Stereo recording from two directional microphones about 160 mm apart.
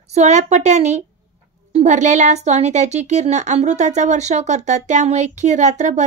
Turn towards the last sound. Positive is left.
turn(degrees=-45)  # may be behind; listen again after turning